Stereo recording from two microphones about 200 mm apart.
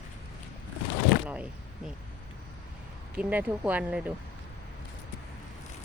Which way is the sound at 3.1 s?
10° right (ahead or behind).